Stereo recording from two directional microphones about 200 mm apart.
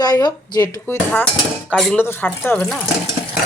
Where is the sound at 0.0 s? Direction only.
20° left (ahead or behind).